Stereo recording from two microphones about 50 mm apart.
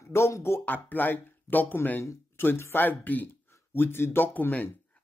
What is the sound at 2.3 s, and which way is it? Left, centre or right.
Speech, left.